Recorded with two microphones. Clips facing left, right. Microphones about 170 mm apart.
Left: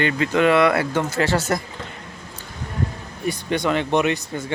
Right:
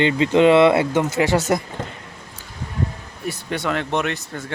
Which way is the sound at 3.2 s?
5° right (ahead or behind).